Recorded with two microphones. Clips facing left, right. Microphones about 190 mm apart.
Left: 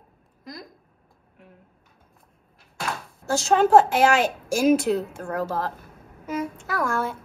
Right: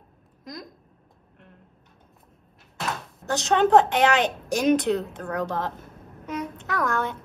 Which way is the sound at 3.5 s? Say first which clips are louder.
Left 1 dB; 5° left (ahead or behind).